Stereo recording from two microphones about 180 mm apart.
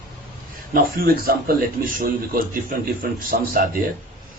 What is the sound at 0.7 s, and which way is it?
A man's voice, 55° right (ahead or behind).